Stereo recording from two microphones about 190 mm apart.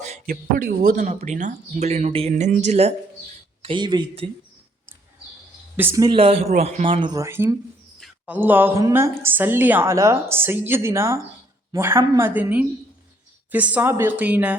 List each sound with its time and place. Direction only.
0.0 s speech: 40° right (ahead or behind)
5.7 s a woman's voice: 15° right (ahead or behind)
6.1 s speech: 30° right (ahead or behind); by 7.5 s 15° right (ahead or behind)
7.9 s a sound: centre (ahead or behind)
8.4 s a woman's voice: 10° right (ahead or behind)